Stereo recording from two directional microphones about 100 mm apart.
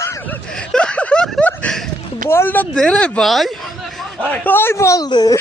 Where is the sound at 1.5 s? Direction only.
10° left (ahead or behind).